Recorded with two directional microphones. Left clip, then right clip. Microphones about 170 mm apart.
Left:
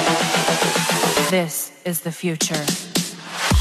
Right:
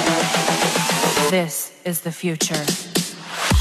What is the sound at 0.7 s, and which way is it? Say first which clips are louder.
Music: even; centre (ahead or behind).